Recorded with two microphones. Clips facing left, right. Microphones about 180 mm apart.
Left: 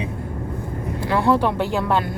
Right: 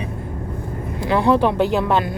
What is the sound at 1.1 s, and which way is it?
Speech, 20° right (ahead or behind).